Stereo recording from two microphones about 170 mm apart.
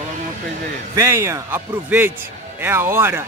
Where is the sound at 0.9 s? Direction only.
15° right (ahead or behind).